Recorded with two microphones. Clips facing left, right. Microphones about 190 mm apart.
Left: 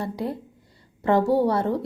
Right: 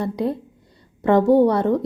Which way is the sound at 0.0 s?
20° right (ahead or behind).